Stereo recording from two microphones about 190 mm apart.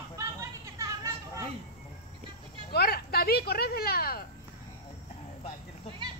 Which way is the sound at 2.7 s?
55° left (ahead or behind).